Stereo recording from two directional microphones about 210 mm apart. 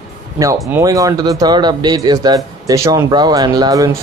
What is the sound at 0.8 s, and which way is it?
Speech, 15° right (ahead or behind).